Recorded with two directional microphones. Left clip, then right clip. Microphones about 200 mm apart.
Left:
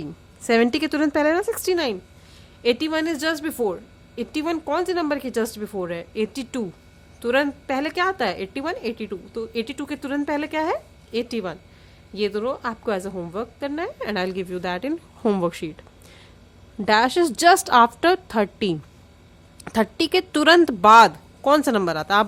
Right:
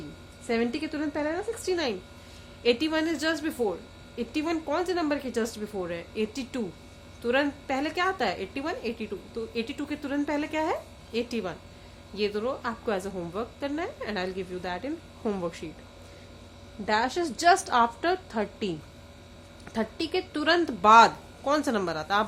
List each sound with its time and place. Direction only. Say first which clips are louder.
0.4 s a woman's voice: left 9 dB; 40° left (ahead or behind)
16.8 s a woman's voice: left 8 dB; 35° left (ahead or behind)